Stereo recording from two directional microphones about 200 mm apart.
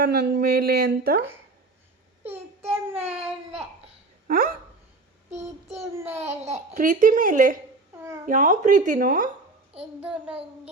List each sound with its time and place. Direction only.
0.0 s speech: 50° right (ahead or behind)
2.6 s child singing: 10° right (ahead or behind)
4.3 s speech: 45° right (ahead or behind)
6.4 s speech: 40° right (ahead or behind)
9.7 s child singing: 5° right (ahead or behind)